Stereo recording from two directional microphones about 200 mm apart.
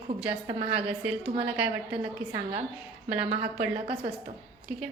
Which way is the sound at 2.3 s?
25° right (ahead or behind).